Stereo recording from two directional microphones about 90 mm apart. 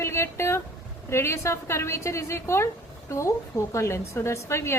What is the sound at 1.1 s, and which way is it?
A woman's voice, 30° left (ahead or behind).